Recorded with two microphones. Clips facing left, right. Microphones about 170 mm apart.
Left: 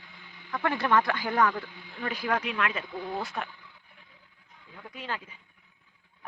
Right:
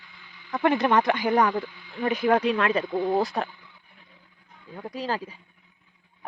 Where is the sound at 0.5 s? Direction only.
20° right (ahead or behind); by 3.4 s 35° right (ahead or behind).